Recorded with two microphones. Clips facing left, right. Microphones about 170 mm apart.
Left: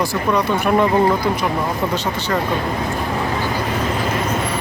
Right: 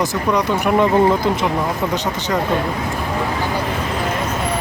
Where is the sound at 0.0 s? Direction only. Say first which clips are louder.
Even; 20° right (ahead or behind).